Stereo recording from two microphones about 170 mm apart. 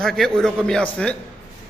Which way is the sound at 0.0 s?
5° left (ahead or behind).